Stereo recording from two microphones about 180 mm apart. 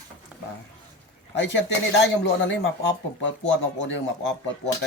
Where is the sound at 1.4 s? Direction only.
80° left.